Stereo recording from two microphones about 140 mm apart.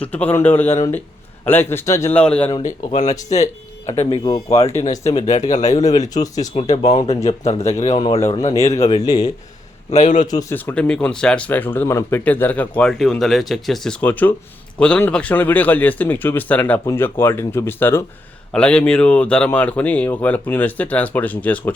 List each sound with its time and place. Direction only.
0.0 s speech: 10° left (ahead or behind)
2.1 s speech: 10° left (ahead or behind)
2.9 s speech: 55° left (ahead or behind)
4.2 s speech: 25° left (ahead or behind)
4.8 s speech: 50° left (ahead or behind)
10.5 s speech: 10° left (ahead or behind)